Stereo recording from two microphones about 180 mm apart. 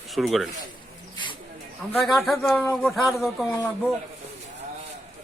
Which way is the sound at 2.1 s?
Centre (ahead or behind).